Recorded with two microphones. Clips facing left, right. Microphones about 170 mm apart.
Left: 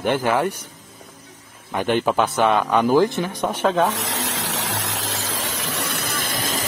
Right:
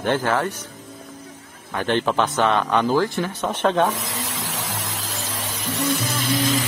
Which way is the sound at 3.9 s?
85° left.